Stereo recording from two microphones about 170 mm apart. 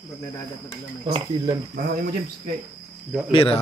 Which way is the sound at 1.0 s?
30° right (ahead or behind).